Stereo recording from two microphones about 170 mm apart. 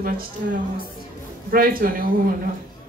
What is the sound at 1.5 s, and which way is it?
Speech, 55° right (ahead or behind).